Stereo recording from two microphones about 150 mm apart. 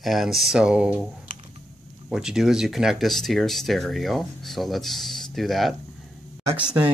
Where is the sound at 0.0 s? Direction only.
Centre (ahead or behind).